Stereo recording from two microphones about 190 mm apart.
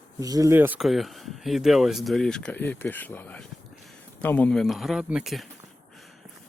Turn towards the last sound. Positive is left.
turn(degrees=0)  # may be behind; listen again after turning